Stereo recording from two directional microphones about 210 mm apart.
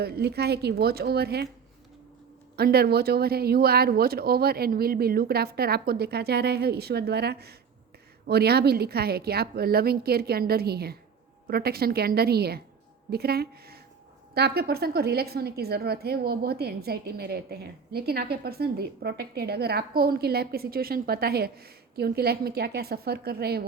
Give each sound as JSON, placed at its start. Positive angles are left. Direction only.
{"t": 0.0, "sound": "a woman's voice", "side_deg": -50}
{"t": 2.6, "sound": "a woman's voice", "side_deg": -50}